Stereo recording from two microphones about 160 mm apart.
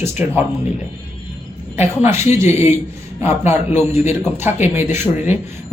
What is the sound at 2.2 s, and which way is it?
Speech, 15° right (ahead or behind).